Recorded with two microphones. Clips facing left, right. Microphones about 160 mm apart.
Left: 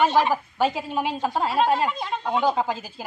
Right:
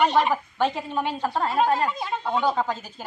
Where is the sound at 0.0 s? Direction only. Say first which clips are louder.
Left 1 dB; 5° left (ahead or behind).